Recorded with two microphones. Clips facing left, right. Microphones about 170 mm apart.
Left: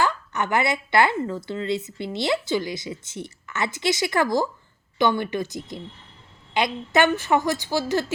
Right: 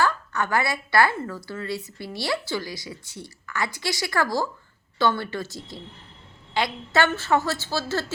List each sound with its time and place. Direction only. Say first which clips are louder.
0.0 s a woman's voice: even; 20° left (ahead or behind)